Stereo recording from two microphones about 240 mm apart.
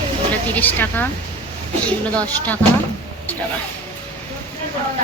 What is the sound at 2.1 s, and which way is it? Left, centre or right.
Speech, centre.